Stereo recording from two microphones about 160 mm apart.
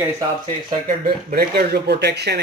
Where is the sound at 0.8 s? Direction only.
70° right (ahead or behind); by 2.3 s 90° right.